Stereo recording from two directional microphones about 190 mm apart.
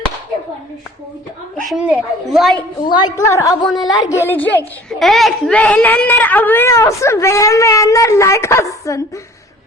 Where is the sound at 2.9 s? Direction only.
20° left (ahead or behind).